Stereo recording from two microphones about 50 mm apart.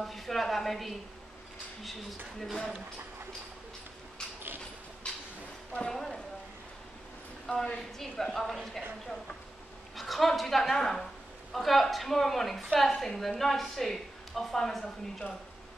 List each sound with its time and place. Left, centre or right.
0.0 s a woman's voice: centre
2.4 s a woman's voice: centre
5.1 s a sound: centre
5.9 s speech: centre
7.5 s a woman's voice: left
8.0 s a woman's voice: centre
9.9 s a woman's voice: centre